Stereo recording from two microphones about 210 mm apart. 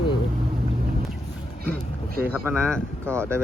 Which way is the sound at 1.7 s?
45° right (ahead or behind).